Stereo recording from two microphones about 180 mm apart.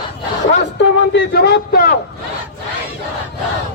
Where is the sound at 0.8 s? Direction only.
80° left; by 2.0 s 55° left (ahead or behind).